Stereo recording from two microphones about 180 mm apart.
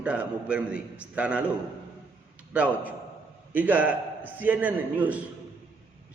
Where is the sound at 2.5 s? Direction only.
10° right (ahead or behind).